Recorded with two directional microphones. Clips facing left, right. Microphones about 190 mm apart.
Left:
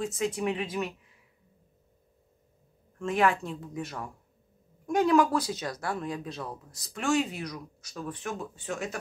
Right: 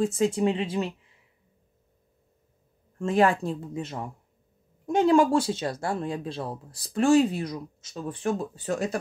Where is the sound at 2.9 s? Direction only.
30° right (ahead or behind).